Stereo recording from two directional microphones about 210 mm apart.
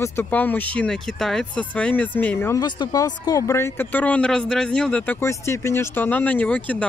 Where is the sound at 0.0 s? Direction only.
10° left (ahead or behind).